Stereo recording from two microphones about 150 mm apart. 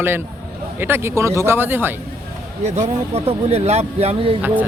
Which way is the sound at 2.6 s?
45° right (ahead or behind).